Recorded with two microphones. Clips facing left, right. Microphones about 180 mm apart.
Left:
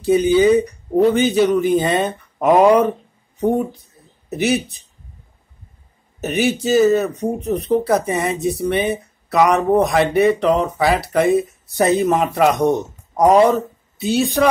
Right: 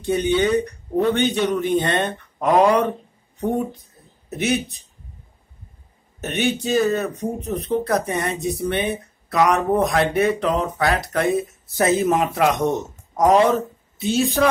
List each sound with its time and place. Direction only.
0.0 s speech: centre (ahead or behind)
6.2 s a man's voice: centre (ahead or behind)